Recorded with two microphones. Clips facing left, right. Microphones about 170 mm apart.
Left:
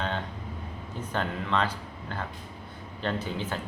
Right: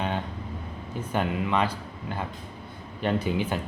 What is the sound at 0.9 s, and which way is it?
Speech, 10° right (ahead or behind).